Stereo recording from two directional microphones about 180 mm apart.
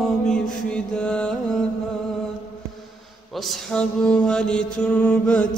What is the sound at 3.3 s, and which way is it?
Mantra, centre (ahead or behind).